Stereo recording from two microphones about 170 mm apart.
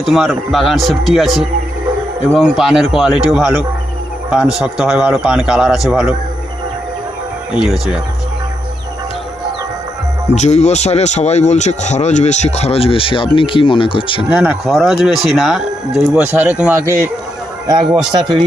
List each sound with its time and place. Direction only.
0.0 s speech: centre (ahead or behind)
7.5 s speech: 5° right (ahead or behind)
10.3 s speech: 40° left (ahead or behind)
14.3 s speech: 5° right (ahead or behind)
18.1 s speech: 25° right (ahead or behind)